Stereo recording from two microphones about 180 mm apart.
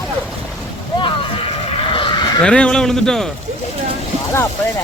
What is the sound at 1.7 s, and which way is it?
Vehicle, 30° left (ahead or behind).